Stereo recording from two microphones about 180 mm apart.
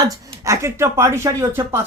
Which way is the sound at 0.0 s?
15° right (ahead or behind).